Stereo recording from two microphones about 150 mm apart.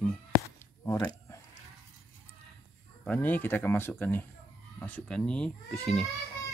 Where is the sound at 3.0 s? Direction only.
10° left (ahead or behind).